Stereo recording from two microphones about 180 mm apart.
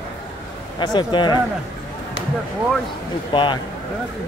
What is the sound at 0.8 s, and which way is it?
Speech, 25° left (ahead or behind).